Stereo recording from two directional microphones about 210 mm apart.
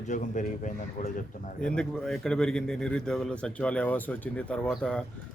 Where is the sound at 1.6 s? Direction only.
5° left (ahead or behind).